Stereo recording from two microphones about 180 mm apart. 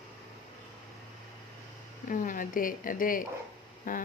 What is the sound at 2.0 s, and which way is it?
Speech, 50° left (ahead or behind).